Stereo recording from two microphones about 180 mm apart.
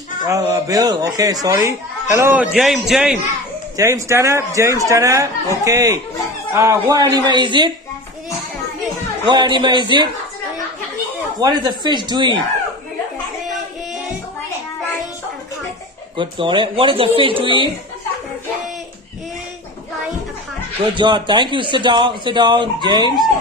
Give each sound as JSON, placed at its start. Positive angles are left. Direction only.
{"t": 0.3, "sound": "a man's voice", "side_deg": -20}
{"t": 3.7, "sound": "a man's voice", "side_deg": -15}
{"t": 9.2, "sound": "speech", "side_deg": -25}
{"t": 11.3, "sound": "speech", "side_deg": -25}
{"t": 16.2, "sound": "speech", "side_deg": -25}
{"t": 20.9, "sound": "speech", "side_deg": -25}